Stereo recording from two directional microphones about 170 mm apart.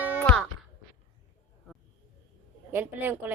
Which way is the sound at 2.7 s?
10° right (ahead or behind).